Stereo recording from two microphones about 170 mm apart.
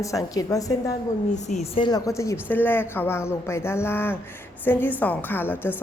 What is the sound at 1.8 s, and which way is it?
A woman's voice, 20° left (ahead or behind).